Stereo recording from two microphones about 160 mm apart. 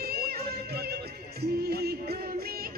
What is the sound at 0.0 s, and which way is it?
Music, 75° right (ahead or behind).